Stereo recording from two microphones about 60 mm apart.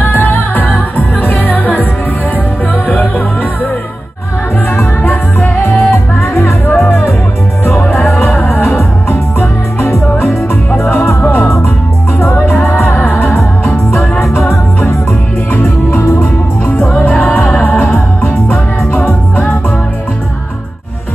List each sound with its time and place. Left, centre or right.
0.0 s music: left
4.7 s music: left